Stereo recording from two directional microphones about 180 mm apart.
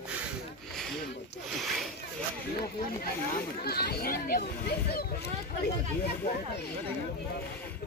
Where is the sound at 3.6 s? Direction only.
60° left (ahead or behind).